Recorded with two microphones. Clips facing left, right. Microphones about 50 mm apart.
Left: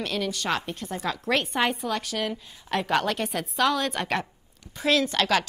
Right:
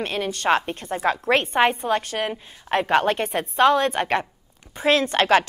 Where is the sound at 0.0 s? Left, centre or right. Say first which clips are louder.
Right 4 dB; right.